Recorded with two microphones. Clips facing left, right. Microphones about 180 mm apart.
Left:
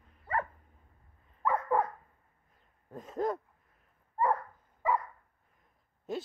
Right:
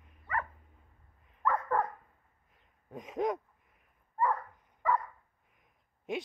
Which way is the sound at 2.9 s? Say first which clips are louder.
Even; 20° right (ahead or behind).